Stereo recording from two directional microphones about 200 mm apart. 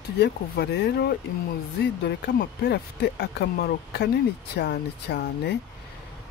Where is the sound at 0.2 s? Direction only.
55° left (ahead or behind).